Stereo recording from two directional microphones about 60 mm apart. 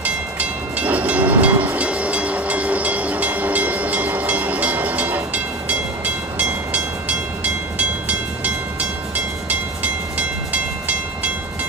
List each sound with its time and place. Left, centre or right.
0.0 s train: right
10.1 s train: right